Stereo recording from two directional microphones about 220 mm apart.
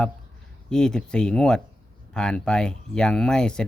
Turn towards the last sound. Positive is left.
turn(degrees=5)  # may be behind; listen again after turning